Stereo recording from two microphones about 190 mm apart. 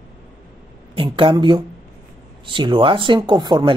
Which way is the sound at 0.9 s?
25° right (ahead or behind).